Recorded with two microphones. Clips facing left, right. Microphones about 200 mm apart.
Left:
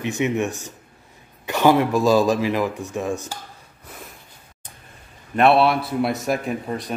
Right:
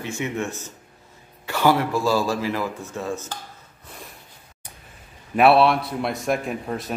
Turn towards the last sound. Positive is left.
turn(degrees=0)  # may be behind; listen again after turning